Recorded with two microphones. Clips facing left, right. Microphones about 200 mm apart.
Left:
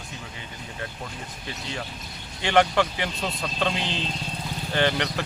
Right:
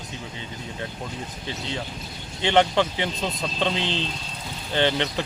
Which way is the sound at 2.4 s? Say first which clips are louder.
Right 1 dB; 20° right (ahead or behind).